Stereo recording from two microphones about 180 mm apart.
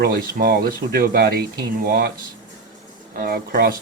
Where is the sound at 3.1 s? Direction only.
55° right (ahead or behind).